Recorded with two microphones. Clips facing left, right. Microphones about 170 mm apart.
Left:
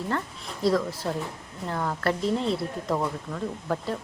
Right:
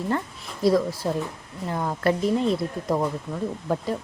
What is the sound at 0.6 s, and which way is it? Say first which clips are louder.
Speech: right 4 dB; 10° right (ahead or behind).